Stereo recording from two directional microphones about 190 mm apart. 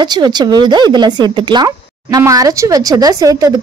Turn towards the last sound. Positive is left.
turn(degrees=-20)  # may be behind; listen again after turning